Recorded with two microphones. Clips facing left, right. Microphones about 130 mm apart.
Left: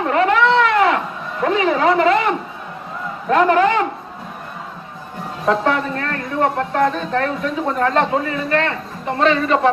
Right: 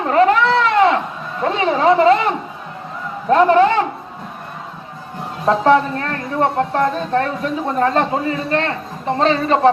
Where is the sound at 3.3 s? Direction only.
30° right (ahead or behind).